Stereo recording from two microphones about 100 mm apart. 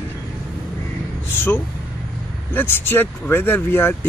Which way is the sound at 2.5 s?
20° left (ahead or behind).